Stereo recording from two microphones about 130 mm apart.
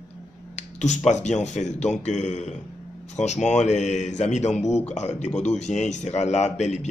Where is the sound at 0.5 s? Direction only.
65° left (ahead or behind).